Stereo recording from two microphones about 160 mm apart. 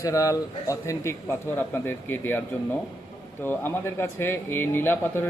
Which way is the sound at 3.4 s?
15° left (ahead or behind).